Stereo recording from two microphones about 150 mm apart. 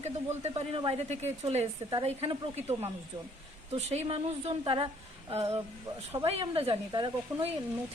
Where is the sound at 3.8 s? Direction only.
45° right (ahead or behind).